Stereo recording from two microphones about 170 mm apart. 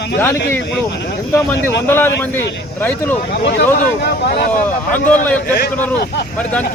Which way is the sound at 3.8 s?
75° left (ahead or behind).